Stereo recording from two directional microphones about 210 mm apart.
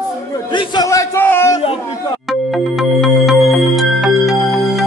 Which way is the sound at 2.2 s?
Centre (ahead or behind).